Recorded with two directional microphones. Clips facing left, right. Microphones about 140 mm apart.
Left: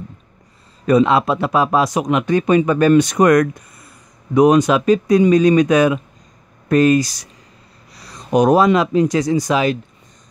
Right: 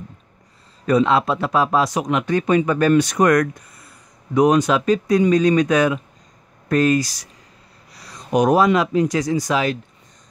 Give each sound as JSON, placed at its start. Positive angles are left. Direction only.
{"t": 0.8, "sound": "speech", "side_deg": 15}
{"t": 8.3, "sound": "speech", "side_deg": 30}